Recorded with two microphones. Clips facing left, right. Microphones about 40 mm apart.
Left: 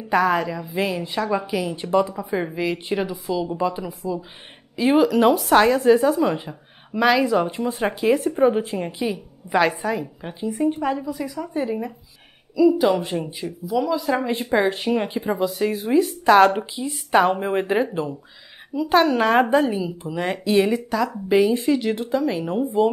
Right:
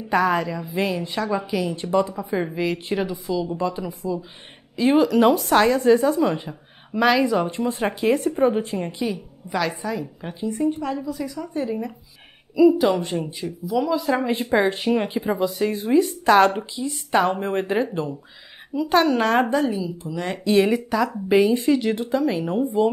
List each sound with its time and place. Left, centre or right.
0.1 s a woman's voice: centre
9.5 s a woman's voice: left
10.2 s speech: centre
12.7 s a woman's voice: centre
19.7 s a woman's voice: left
20.2 s a woman's voice: centre